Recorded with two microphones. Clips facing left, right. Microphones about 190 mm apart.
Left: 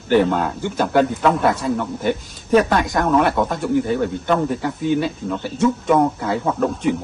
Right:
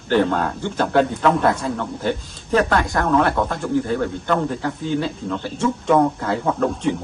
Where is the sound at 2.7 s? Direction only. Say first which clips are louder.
Left 1 dB; 20° left (ahead or behind).